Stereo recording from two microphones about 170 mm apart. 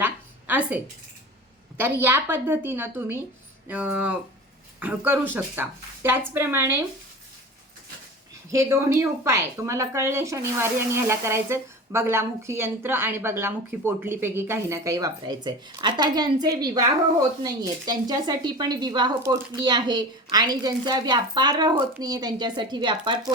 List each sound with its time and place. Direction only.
0.0 s a sound: 10° right (ahead or behind)
1.8 s speech: 15° right (ahead or behind)
8.4 s speech: 15° right (ahead or behind)